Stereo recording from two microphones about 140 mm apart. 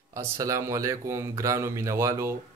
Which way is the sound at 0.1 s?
20° right (ahead or behind).